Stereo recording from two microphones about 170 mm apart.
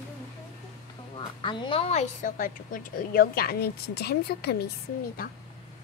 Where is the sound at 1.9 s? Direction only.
45° left (ahead or behind); by 4.6 s 70° left (ahead or behind).